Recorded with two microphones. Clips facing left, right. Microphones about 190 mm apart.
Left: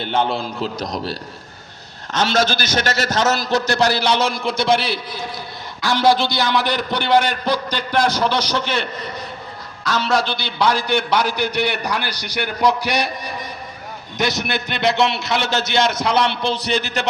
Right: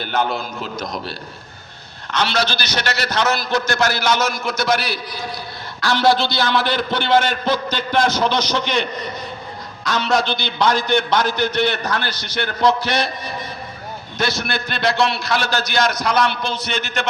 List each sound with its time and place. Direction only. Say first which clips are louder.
0.0 s a man's voice: left 1 dB; 30° left (ahead or behind)
2.1 s a man's voice: left 2 dB; 45° left (ahead or behind)